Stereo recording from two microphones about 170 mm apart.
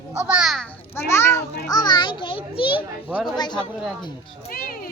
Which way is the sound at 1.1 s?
15° left (ahead or behind).